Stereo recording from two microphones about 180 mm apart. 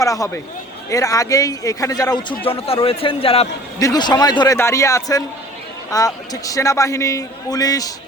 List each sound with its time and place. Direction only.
0.0 s a man's voice: 20° left (ahead or behind)
2.4 s a man's voice: 30° left (ahead or behind)
3.8 s a man's voice: 20° left (ahead or behind)